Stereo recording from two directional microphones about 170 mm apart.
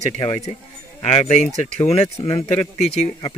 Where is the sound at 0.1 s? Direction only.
35° left (ahead or behind).